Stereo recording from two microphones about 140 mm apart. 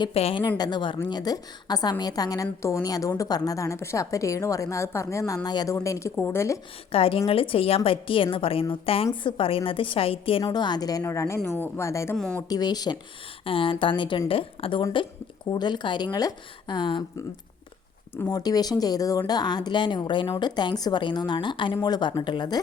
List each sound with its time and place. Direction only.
0.0 s a woman's voice: 45° left (ahead or behind); by 6.6 s 20° left (ahead or behind)
6.9 s a woman's voice: 40° left (ahead or behind)
10.4 s a woman's voice: 30° left (ahead or behind)
12.1 s speech: 5° left (ahead or behind)
12.4 s a woman's voice: 25° left (ahead or behind)
13.4 s a woman's voice: 40° left (ahead or behind)
18.3 s a woman's voice: 25° left (ahead or behind)